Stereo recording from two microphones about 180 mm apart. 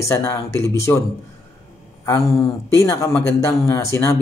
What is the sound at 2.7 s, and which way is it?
Speech, 15° left (ahead or behind).